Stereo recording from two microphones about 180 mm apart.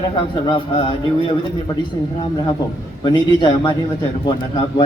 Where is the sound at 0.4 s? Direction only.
25° left (ahead or behind).